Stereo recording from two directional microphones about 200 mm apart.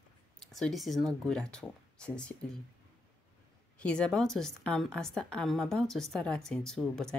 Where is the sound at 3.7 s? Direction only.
5° left (ahead or behind).